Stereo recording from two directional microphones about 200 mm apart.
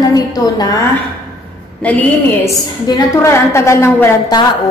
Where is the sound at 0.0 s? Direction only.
20° left (ahead or behind).